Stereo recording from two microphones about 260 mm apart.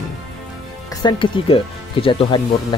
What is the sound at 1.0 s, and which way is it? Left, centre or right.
Speech, centre.